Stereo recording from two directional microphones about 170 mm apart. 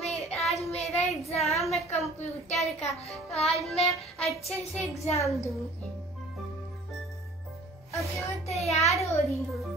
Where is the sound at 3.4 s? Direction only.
35° left (ahead or behind).